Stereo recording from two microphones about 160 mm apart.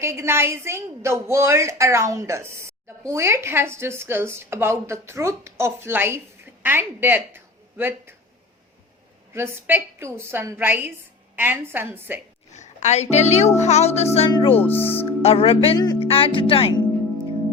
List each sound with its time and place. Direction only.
0.0 s a woman's voice: 15° right (ahead or behind)
9.3 s a woman's voice: 15° right (ahead or behind)
12.5 s a woman's voice: 45° left (ahead or behind); by 14.6 s 30° left (ahead or behind)
14.6 s speech: 10° left (ahead or behind)
15.2 s speech: 40° left (ahead or behind)
16.0 s music: 35° left (ahead or behind)